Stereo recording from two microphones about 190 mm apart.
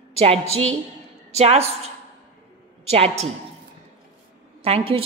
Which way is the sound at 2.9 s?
35° right (ahead or behind).